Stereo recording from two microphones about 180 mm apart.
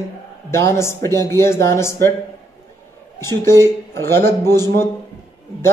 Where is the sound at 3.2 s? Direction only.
15° left (ahead or behind).